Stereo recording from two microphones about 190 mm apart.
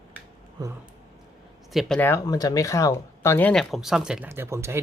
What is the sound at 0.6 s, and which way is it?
Speech, 20° right (ahead or behind).